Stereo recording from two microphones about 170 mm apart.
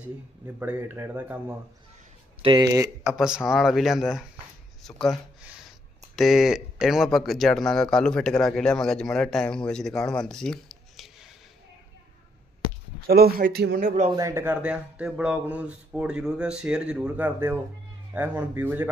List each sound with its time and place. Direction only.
0.6 s speech: 15° right (ahead or behind)
2.4 s speech: 25° right (ahead or behind)
3.1 s speech: 5° right (ahead or behind)
13.0 s speech: 65° right (ahead or behind)
14.1 s speech: 15° right (ahead or behind)